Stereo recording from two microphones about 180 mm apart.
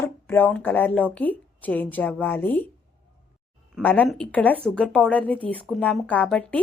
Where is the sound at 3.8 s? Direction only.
10° left (ahead or behind).